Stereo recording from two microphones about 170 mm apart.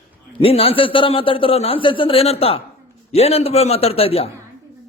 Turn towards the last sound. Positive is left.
turn(degrees=35)  # may be behind; listen again after turning